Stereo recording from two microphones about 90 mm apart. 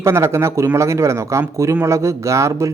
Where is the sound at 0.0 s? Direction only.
30° right (ahead or behind).